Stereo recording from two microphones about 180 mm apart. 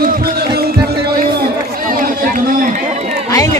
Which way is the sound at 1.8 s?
50° right (ahead or behind).